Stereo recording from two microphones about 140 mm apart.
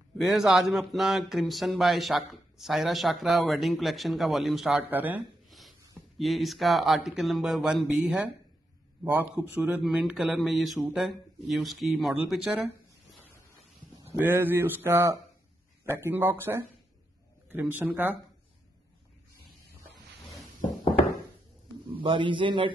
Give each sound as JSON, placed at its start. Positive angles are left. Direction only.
{"t": 0.2, "sound": "speech", "side_deg": 0}
{"t": 4.8, "sound": "speech", "side_deg": -15}
{"t": 5.5, "sound": "speech", "side_deg": 0}
{"t": 14.0, "sound": "speech", "side_deg": -15}
{"t": 21.9, "sound": "a man's voice", "side_deg": -35}